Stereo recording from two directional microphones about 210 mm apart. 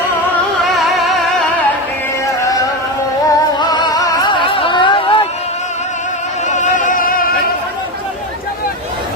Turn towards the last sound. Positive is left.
turn(degrees=40)  # may be behind; listen again after turning